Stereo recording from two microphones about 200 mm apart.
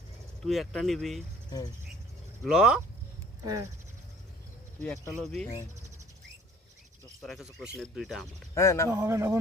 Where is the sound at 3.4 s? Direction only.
20° right (ahead or behind).